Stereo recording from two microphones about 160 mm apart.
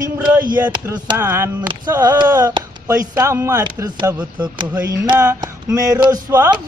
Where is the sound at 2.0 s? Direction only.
20° right (ahead or behind).